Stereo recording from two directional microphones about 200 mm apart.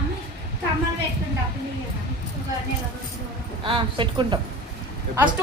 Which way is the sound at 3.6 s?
25° right (ahead or behind).